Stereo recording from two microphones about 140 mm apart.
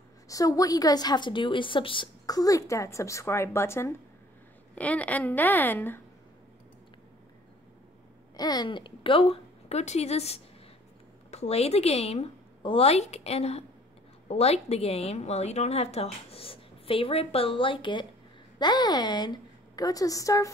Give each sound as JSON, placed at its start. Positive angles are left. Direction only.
{"t": 0.3, "sound": "a woman's voice", "side_deg": 25}
{"t": 8.4, "sound": "a woman's voice", "side_deg": 30}